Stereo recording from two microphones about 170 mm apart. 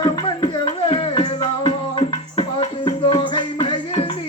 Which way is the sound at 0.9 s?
30° left (ahead or behind).